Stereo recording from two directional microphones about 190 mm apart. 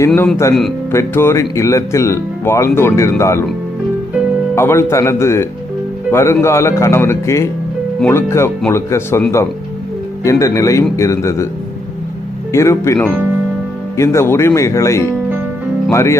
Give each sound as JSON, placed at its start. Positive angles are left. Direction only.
{"t": 0.1, "sound": "speech", "side_deg": 0}
{"t": 0.9, "sound": "speech", "side_deg": 15}
{"t": 4.5, "sound": "speech", "side_deg": 15}
{"t": 10.2, "sound": "speech", "side_deg": 15}
{"t": 12.5, "sound": "speech", "side_deg": 15}